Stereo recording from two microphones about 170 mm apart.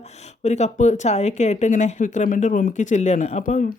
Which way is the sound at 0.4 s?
40° left (ahead or behind).